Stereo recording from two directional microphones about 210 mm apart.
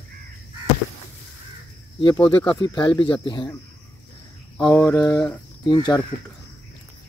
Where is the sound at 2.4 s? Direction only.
20° left (ahead or behind).